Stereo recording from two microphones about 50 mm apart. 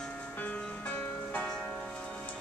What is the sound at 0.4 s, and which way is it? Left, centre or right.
Music, left.